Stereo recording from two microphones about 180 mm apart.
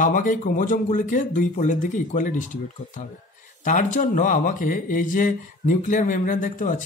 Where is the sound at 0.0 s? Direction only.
45° left (ahead or behind).